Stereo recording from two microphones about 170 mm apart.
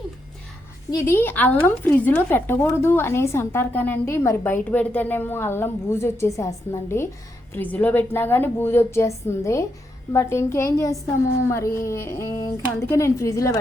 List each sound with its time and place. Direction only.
0.9 s a woman's voice: 15° left (ahead or behind)